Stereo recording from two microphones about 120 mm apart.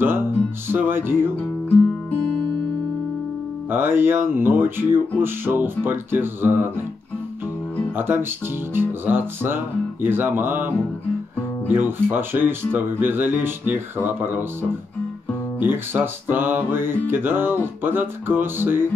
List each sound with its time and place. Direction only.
0.7 s music: 15° right (ahead or behind)
3.7 s music: 15° right (ahead or behind)
7.9 s speech: 15° right (ahead or behind)
8.7 s music: 15° right (ahead or behind)
15.6 s music: 15° right (ahead or behind)